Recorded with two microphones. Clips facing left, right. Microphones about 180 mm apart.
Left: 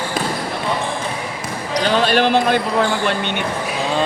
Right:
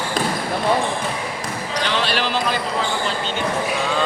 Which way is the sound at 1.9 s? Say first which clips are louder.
Left 8 dB; 45° left (ahead or behind).